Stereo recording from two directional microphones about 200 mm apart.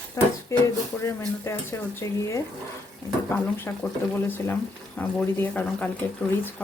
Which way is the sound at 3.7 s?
10° left (ahead or behind).